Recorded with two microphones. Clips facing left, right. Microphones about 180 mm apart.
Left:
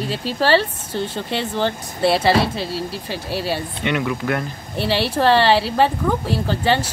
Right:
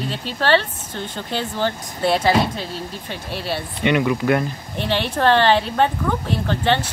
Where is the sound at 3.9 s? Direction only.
10° right (ahead or behind).